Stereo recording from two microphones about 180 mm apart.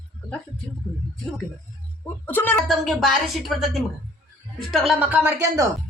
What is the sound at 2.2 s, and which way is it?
Speech, 10° left (ahead or behind).